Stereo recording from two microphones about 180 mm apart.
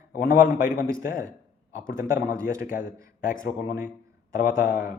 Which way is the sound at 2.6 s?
50° left (ahead or behind).